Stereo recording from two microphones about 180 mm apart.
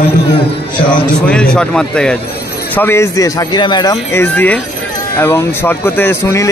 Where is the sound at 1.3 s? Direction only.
5° left (ahead or behind).